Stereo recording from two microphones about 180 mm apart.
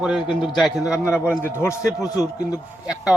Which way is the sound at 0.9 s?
15° left (ahead or behind).